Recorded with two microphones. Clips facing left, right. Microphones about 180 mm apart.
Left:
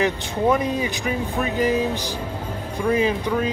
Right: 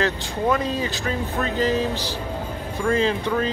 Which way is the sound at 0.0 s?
15° left (ahead or behind).